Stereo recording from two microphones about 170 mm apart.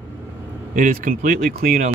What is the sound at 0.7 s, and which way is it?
Speech, 50° right (ahead or behind).